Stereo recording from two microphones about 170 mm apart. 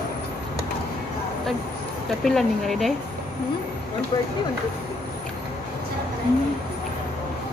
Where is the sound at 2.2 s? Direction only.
Centre (ahead or behind).